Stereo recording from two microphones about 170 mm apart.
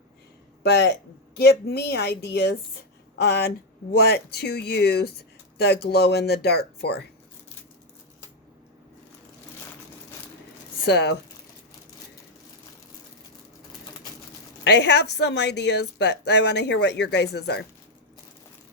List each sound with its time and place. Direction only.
0.6 s speech: 70° left (ahead or behind)
10.8 s a woman's voice: 80° left
14.6 s a woman's voice: 90° left